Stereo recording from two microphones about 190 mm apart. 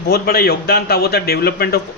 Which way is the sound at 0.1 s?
55° left (ahead or behind).